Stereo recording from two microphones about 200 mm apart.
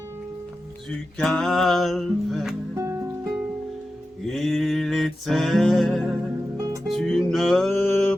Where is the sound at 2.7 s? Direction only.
15° right (ahead or behind).